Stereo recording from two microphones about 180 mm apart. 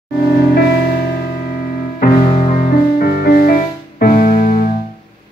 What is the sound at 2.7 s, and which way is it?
Music, 55° left (ahead or behind).